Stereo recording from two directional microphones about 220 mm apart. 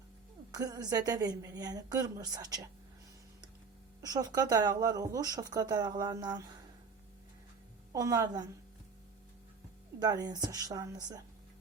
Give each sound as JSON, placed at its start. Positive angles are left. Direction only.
{"t": 0.5, "sound": "speech", "side_deg": -15}
{"t": 4.0, "sound": "speech", "side_deg": -15}
{"t": 7.9, "sound": "speech", "side_deg": -15}
{"t": 10.0, "sound": "speech", "side_deg": -15}